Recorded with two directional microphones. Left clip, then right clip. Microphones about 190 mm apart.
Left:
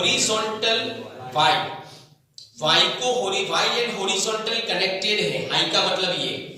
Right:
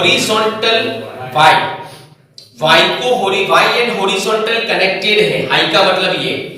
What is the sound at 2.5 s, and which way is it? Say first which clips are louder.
A man's voice: right 9 dB; 20° left (ahead or behind).